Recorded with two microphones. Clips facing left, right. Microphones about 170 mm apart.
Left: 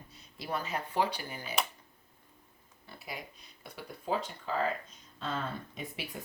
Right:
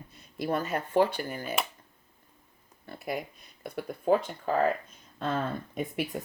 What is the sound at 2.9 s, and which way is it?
Speech, 55° right (ahead or behind).